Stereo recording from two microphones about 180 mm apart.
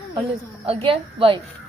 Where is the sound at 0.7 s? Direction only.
30° right (ahead or behind).